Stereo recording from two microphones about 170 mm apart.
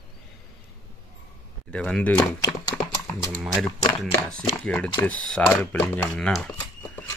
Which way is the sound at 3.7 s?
25° left (ahead or behind).